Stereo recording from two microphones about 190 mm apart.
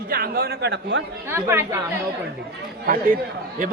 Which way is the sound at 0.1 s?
55° right (ahead or behind).